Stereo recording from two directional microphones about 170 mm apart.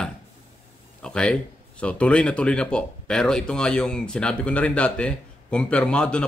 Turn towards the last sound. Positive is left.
turn(degrees=5)  # may be behind; listen again after turning